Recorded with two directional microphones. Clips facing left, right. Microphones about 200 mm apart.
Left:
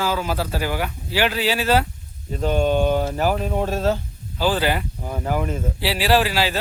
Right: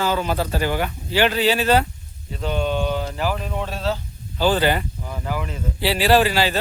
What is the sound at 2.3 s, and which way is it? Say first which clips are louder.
Speech: left 4 dB; 45° left (ahead or behind).